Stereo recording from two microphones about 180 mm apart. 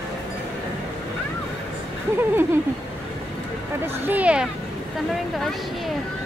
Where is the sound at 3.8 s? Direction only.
10° right (ahead or behind).